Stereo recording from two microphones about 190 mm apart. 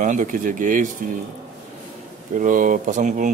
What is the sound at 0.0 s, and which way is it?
Speech, 45° right (ahead or behind).